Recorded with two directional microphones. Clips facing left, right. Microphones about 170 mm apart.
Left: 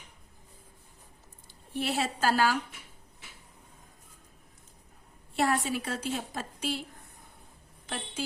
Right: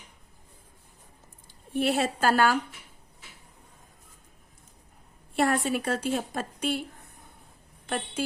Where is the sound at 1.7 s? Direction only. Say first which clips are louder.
Right 5 dB; 55° right (ahead or behind).